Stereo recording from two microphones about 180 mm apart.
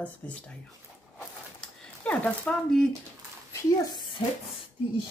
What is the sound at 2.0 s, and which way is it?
Speech, 5° left (ahead or behind).